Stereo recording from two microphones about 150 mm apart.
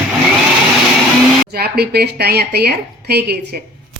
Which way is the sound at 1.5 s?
90° right.